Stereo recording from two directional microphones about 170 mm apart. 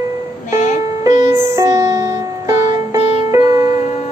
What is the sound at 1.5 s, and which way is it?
Music, 20° right (ahead or behind).